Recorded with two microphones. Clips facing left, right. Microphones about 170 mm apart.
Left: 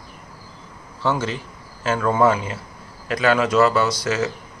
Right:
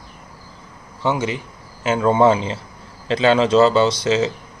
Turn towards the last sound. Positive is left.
turn(degrees=-25)  # may be behind; listen again after turning